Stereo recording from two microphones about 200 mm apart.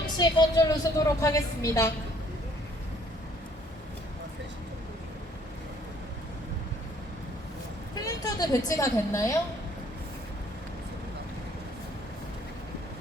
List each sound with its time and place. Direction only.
0.2 s a woman's voice: 20° left (ahead or behind)
7.9 s a woman's voice: 20° left (ahead or behind)